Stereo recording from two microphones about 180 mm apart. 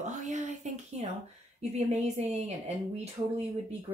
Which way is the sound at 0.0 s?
40° right (ahead or behind).